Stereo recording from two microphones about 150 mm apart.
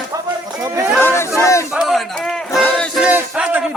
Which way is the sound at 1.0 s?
15° left (ahead or behind).